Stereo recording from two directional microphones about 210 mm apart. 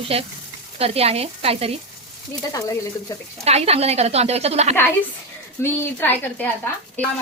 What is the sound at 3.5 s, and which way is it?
A woman's voice, 30° right (ahead or behind).